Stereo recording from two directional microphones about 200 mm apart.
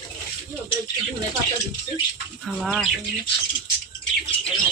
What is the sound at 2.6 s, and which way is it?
Speech, centre (ahead or behind).